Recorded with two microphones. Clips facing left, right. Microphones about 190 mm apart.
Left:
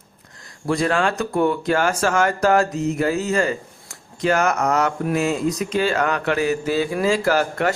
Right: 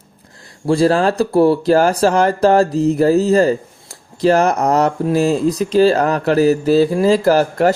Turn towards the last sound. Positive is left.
turn(degrees=-35)  # may be behind; listen again after turning